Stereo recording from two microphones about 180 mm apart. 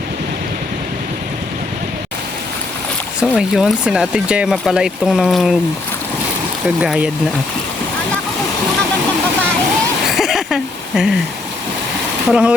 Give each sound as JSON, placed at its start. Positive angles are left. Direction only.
{"t": 3.2, "sound": "speech", "side_deg": -5}
{"t": 6.8, "sound": "speech", "side_deg": -5}
{"t": 10.1, "sound": "a sound", "side_deg": 0}
{"t": 12.3, "sound": "speech", "side_deg": -5}